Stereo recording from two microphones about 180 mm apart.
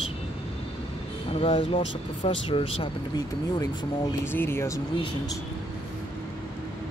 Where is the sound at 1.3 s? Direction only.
35° left (ahead or behind); by 4.8 s 15° left (ahead or behind).